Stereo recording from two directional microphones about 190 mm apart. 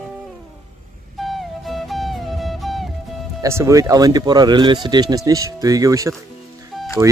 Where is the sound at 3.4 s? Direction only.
15° right (ahead or behind).